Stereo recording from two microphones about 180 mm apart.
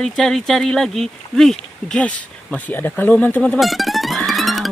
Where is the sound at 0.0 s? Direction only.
5° left (ahead or behind).